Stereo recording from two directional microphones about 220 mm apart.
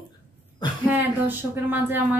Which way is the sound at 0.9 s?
10° right (ahead or behind).